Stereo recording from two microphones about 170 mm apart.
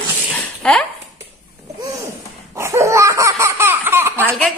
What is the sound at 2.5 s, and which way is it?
Laughter, 15° right (ahead or behind).